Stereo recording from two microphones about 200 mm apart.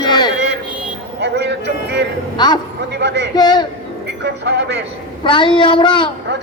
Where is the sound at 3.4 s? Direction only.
20° left (ahead or behind).